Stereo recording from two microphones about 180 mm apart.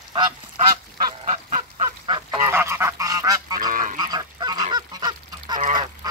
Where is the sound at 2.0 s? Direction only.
25° right (ahead or behind).